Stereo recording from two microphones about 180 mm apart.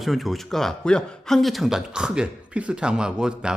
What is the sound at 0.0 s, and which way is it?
A man's voice, centre (ahead or behind).